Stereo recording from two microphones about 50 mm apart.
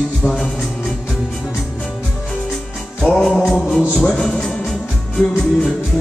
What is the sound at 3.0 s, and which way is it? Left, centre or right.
Music, centre.